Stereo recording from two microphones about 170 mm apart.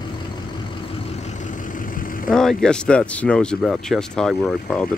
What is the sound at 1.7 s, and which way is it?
Vehicle, 55° left (ahead or behind).